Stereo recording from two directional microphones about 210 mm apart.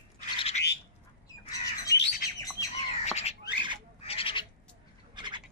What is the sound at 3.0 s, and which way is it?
Bird, 30° left (ahead or behind).